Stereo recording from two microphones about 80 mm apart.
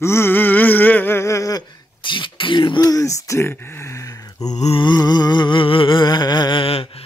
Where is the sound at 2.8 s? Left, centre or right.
Left.